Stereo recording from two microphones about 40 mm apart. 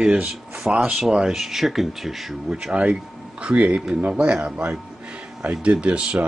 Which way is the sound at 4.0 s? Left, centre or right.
Right.